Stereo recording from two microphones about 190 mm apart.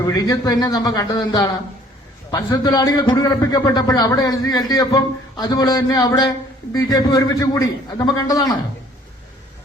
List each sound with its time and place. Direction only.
0.0 s a man's voice: 20° left (ahead or behind)